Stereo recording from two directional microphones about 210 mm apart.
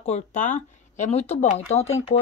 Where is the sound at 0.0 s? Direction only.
35° left (ahead or behind).